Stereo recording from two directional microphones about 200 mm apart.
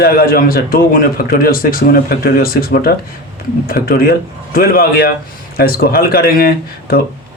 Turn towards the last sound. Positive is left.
turn(degrees=50)  # may be behind; listen again after turning